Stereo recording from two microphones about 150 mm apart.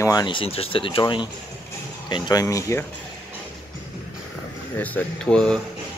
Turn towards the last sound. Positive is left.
turn(degrees=5)  # may be behind; listen again after turning